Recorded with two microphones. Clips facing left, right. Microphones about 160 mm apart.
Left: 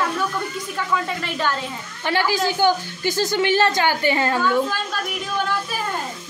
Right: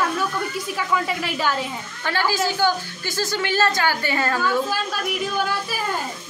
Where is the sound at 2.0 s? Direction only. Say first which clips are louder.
Left 2 dB; 15° left (ahead or behind).